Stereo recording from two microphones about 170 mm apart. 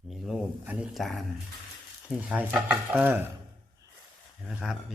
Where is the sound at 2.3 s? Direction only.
10° right (ahead or behind).